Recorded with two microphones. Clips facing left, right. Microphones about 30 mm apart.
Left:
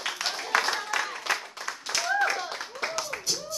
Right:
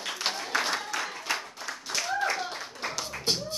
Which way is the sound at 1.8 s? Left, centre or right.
Left.